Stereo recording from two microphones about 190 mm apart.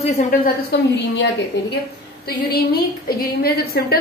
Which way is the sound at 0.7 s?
60° left (ahead or behind).